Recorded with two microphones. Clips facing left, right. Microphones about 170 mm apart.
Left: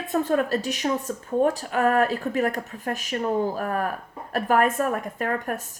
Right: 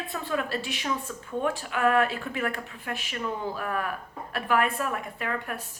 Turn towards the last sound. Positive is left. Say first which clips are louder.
# left 5 dB
turn(degrees=45)  # may be behind; listen again after turning